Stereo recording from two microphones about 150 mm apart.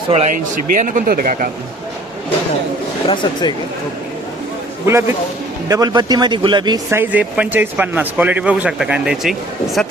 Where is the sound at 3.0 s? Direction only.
30° left (ahead or behind).